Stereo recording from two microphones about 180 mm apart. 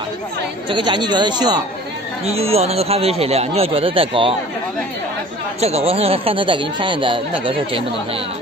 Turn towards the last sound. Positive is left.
turn(degrees=-30)  # may be behind; listen again after turning